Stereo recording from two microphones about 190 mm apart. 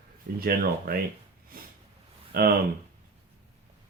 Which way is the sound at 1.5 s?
50° right (ahead or behind).